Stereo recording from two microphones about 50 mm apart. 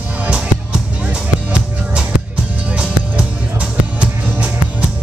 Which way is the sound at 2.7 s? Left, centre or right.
Right.